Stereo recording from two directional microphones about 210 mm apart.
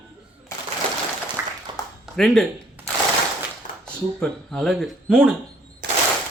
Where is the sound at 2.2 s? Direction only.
5° left (ahead or behind).